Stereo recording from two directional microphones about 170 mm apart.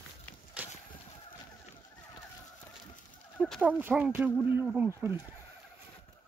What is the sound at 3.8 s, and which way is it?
Speech, 10° right (ahead or behind).